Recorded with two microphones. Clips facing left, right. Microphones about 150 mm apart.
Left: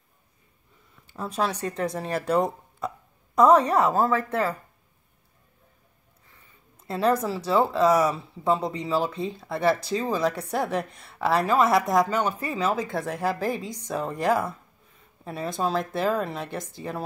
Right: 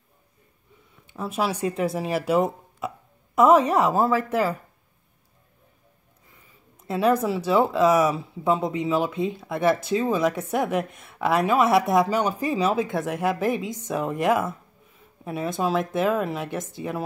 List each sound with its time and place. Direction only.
1.1 s speech: 5° right (ahead or behind)
6.9 s speech: centre (ahead or behind)
12.9 s speech: centre (ahead or behind)
13.6 s a woman's voice: 25° right (ahead or behind)
13.8 s speech: 5° right (ahead or behind)